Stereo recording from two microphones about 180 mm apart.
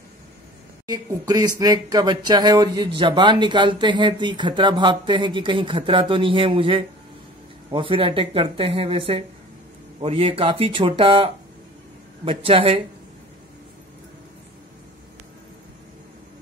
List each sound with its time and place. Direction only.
0.8 s speech: 20° right (ahead or behind)